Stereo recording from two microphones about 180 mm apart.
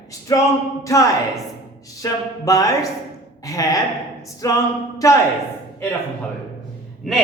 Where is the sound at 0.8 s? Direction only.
15° left (ahead or behind).